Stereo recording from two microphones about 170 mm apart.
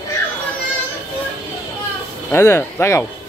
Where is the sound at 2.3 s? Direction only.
15° left (ahead or behind).